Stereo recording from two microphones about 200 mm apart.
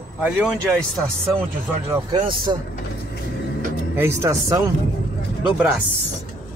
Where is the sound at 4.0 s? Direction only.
15° right (ahead or behind).